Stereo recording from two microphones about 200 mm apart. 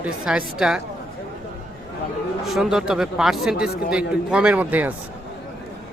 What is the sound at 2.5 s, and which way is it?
Speech, centre (ahead or behind).